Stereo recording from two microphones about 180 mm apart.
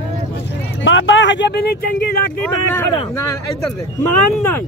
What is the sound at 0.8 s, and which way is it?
Speech, 90° left.